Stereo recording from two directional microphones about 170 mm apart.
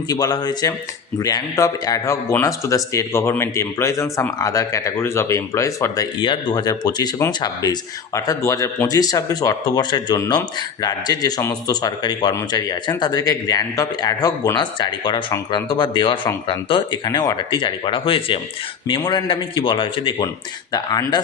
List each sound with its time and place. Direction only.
0.1 s a man's voice: 25° left (ahead or behind)